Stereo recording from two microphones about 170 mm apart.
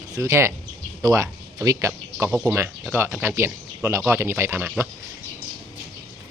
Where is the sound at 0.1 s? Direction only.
15° right (ahead or behind).